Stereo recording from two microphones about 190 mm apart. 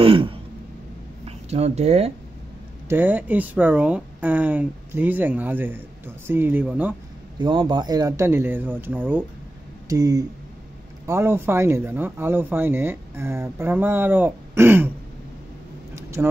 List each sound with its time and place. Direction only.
0.0 s throat clearing: 30° right (ahead or behind)
1.2 s speech: 35° right (ahead or behind)
2.9 s speech: 10° right (ahead or behind)
7.3 s speech: 25° right (ahead or behind)
15.9 s a sound: 15° right (ahead or behind)